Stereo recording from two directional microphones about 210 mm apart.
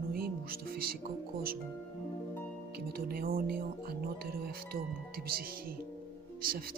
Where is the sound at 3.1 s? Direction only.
45° right (ahead or behind).